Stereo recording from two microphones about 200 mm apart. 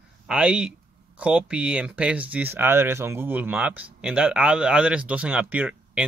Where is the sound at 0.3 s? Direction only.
5° right (ahead or behind).